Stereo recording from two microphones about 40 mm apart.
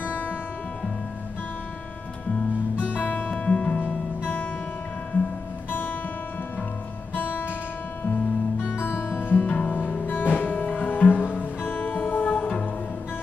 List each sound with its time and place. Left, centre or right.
2.8 s music: left
3.4 s music: left
7.2 s guitar: left
8.7 s music: left
9.3 s music: left